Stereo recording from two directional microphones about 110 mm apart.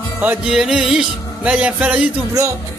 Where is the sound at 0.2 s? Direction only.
10° right (ahead or behind).